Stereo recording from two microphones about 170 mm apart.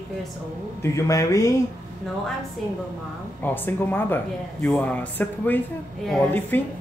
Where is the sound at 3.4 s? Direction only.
10° left (ahead or behind).